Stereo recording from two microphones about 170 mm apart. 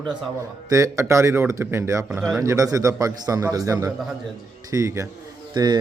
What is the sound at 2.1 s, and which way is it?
Speech, 5° right (ahead or behind).